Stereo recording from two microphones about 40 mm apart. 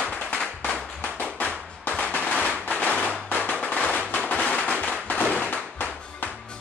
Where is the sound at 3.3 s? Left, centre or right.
Left.